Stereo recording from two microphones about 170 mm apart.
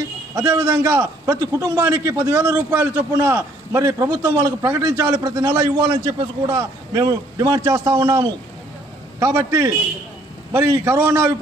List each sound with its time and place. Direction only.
0.4 s a man's voice: 20° right (ahead or behind)